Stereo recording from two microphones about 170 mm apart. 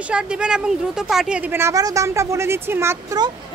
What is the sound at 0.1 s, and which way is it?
Speech, 5° right (ahead or behind).